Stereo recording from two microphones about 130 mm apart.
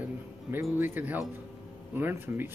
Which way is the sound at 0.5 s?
15° right (ahead or behind).